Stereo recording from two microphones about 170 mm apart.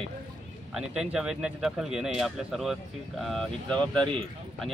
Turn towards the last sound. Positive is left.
turn(degrees=5)  # may be behind; listen again after turning